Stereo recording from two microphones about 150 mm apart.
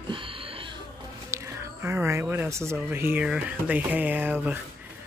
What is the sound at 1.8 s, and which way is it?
Speech, 15° right (ahead or behind).